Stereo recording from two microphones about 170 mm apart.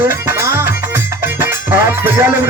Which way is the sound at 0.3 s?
15° right (ahead or behind).